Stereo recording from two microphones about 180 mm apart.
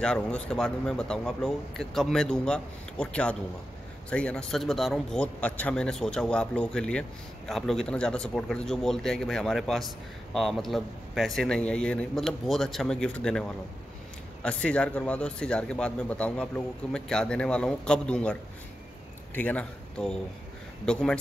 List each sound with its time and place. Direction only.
0.0 s a man's voice: 5° left (ahead or behind)